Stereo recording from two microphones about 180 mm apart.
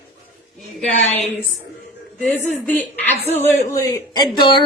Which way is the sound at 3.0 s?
10° left (ahead or behind).